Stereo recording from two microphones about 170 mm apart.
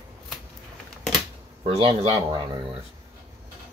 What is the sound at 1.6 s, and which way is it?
Speech, 30° right (ahead or behind).